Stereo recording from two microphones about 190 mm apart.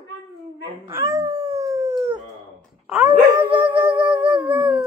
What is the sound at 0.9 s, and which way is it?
Howl, 15° right (ahead or behind).